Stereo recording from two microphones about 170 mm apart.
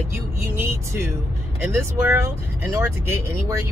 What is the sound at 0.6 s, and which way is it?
Speech, 15° right (ahead or behind).